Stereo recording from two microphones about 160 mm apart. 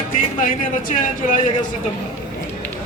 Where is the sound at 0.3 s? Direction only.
55° left (ahead or behind).